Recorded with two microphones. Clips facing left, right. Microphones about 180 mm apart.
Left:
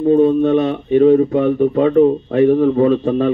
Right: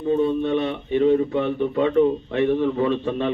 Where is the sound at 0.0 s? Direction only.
45° left (ahead or behind).